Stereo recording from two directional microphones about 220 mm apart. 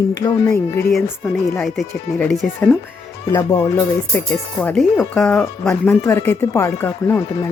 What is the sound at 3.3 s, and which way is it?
Speech, 10° left (ahead or behind).